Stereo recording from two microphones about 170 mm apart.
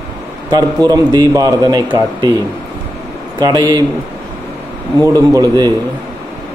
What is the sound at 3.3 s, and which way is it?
Speech, 25° right (ahead or behind).